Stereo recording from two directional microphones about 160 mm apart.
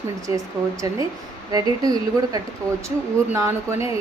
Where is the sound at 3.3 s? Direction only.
15° right (ahead or behind).